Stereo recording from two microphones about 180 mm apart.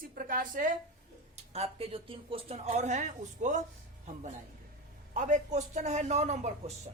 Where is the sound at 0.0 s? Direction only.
50° right (ahead or behind).